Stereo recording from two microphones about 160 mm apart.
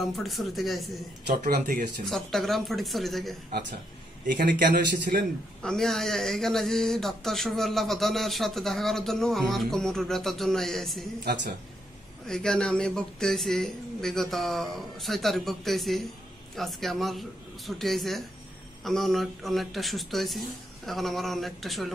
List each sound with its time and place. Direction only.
0.2 s speech: centre (ahead or behind)
1.4 s speech: 60° right (ahead or behind)
2.0 s speech: centre (ahead or behind)
4.4 s speech: 75° right (ahead or behind); by 5.2 s 60° right (ahead or behind)
5.6 s speech: 5° left (ahead or behind)
12.3 s speech: 5° left (ahead or behind)